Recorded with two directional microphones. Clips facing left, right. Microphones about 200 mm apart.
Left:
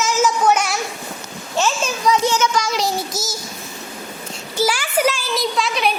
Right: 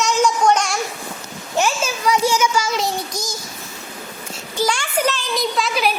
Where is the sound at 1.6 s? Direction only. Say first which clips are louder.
Even; 10° right (ahead or behind).